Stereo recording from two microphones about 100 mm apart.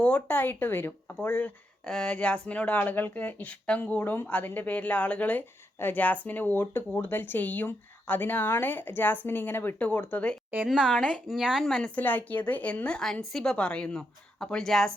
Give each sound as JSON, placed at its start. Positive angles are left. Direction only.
{"t": 0.0, "sound": "speech", "side_deg": 15}
{"t": 1.8, "sound": "speech", "side_deg": 5}
{"t": 10.7, "sound": "a woman's voice", "side_deg": 0}
{"t": 11.9, "sound": "a woman's voice", "side_deg": 20}